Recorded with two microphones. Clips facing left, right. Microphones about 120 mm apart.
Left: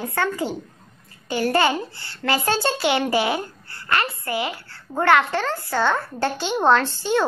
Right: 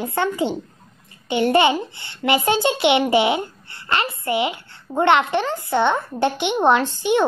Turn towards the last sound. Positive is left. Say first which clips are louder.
# right 1 dB
turn(degrees=-15)  # may be behind; listen again after turning